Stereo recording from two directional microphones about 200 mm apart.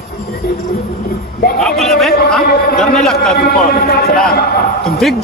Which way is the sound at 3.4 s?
50° left (ahead or behind).